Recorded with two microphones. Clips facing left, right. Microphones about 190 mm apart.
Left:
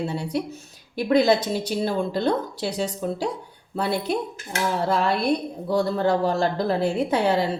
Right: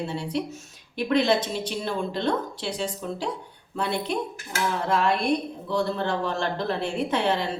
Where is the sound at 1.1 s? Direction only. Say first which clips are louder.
Left 4 dB; 40° left (ahead or behind).